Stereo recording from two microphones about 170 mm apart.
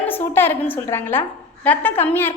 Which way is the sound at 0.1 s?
10° left (ahead or behind).